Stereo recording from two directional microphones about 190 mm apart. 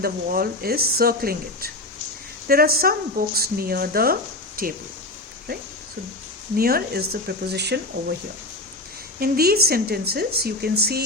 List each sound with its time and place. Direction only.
0.0 s speech: 50° right (ahead or behind)
6.6 s speech: 50° right (ahead or behind)
9.2 s speech: 55° right (ahead or behind)